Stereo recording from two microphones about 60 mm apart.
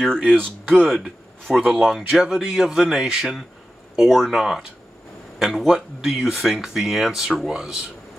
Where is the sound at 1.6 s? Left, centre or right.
Centre.